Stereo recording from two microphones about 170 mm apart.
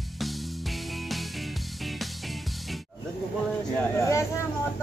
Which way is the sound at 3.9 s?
15° left (ahead or behind).